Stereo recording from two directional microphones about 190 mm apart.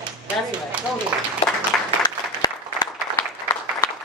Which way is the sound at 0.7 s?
5° right (ahead or behind).